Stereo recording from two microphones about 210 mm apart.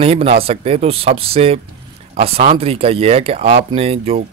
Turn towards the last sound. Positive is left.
turn(degrees=-30)  # may be behind; listen again after turning